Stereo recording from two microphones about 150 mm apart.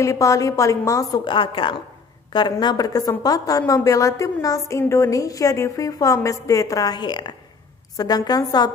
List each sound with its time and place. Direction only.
0.0 s a woman's voice: 20° left (ahead or behind)